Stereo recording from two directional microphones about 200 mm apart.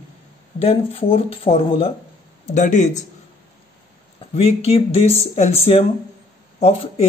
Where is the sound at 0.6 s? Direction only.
30° left (ahead or behind).